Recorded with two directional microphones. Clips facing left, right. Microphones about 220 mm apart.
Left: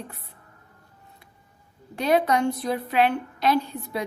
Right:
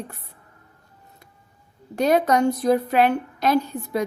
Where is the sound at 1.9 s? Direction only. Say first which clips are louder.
Right 3 dB; 45° right (ahead or behind).